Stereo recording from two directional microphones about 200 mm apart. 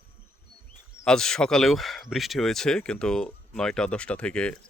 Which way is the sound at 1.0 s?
5° left (ahead or behind).